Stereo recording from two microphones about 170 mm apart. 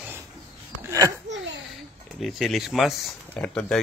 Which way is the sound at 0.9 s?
20° right (ahead or behind).